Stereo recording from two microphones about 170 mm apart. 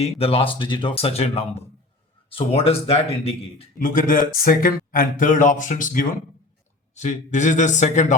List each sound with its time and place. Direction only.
0.0 s speech: 35° left (ahead or behind)
3.8 s speech: 50° left (ahead or behind)